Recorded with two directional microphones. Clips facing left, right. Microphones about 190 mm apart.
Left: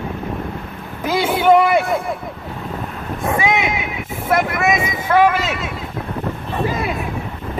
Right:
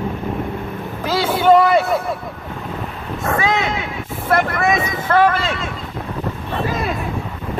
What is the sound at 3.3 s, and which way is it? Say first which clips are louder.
Boat: even; 15° left (ahead or behind).